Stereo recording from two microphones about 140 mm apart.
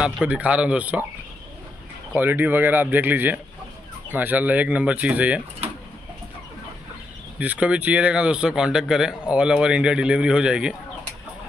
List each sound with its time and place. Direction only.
0.0 s speech: 10° right (ahead or behind)
2.1 s speech: 15° right (ahead or behind)
5.6 s bird: 50° right (ahead or behind)
7.3 s speech: 10° right (ahead or behind)